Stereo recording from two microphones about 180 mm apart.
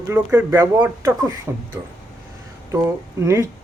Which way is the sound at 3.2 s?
15° right (ahead or behind).